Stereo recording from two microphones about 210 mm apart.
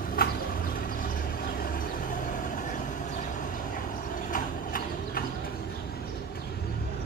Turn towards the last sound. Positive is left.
turn(degrees=45)  # may be behind; listen again after turning